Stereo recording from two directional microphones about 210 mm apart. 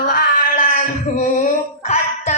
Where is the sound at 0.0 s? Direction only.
40° left (ahead or behind).